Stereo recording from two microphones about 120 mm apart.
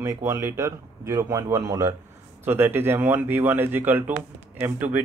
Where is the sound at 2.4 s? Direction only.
15° right (ahead or behind).